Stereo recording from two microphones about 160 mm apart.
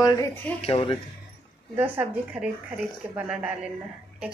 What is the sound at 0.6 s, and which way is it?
Speech, 35° left (ahead or behind).